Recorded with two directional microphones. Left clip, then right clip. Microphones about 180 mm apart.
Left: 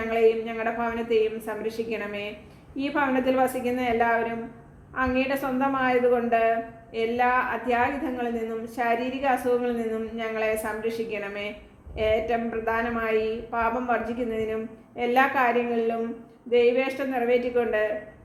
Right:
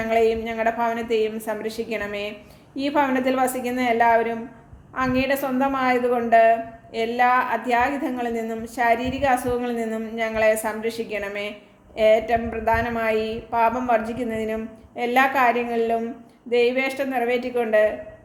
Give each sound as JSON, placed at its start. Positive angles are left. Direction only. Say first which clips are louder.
{"t": 0.1, "sound": "a woman's voice", "louder": "right 2 dB", "side_deg": -35}